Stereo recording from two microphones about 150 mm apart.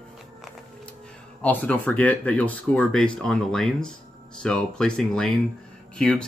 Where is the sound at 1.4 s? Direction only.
10° left (ahead or behind).